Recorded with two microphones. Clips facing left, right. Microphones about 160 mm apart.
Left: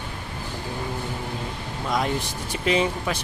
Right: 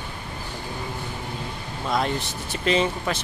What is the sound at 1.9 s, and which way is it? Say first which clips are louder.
Speech: even; 10° left (ahead or behind).